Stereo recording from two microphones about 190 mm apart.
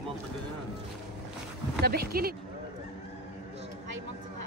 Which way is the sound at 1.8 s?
55° right (ahead or behind).